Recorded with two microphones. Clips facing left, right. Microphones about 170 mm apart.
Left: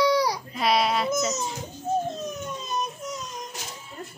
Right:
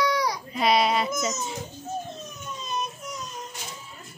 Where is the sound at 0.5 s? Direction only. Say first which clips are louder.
Right 2 dB; centre (ahead or behind).